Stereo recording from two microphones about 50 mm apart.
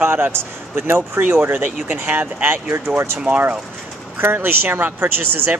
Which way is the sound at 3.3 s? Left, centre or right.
Right.